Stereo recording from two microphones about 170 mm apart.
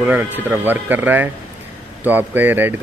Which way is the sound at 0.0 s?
10° right (ahead or behind).